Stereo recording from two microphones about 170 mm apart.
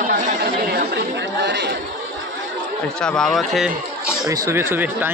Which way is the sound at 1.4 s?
85° right.